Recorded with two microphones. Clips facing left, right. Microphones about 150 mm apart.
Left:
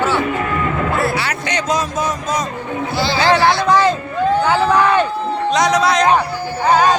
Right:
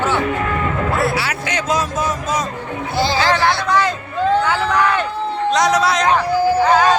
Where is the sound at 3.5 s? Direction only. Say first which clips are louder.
Left 3 dB; 25° left (ahead or behind).